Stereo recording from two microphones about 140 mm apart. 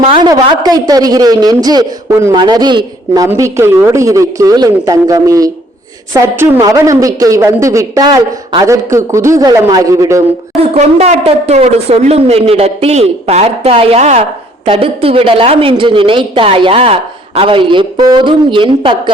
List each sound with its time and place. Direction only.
0.1 s a woman's voice: 30° right (ahead or behind)
10.6 s speech: 50° right (ahead or behind)